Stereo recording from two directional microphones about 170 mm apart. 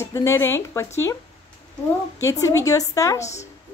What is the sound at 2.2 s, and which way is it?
Speech, 20° left (ahead or behind).